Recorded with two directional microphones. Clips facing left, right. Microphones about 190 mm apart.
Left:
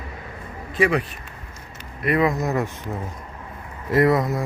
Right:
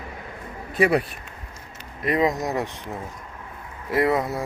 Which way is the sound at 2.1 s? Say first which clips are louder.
Left 2 dB; 20° right (ahead or behind).